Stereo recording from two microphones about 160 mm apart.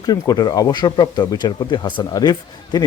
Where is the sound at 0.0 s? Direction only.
25° left (ahead or behind).